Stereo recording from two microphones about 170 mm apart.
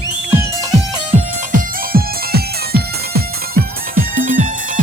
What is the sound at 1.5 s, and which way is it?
Music, 55° right (ahead or behind).